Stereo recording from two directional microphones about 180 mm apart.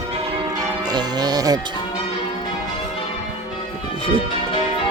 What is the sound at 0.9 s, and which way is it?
Music, 25° right (ahead or behind).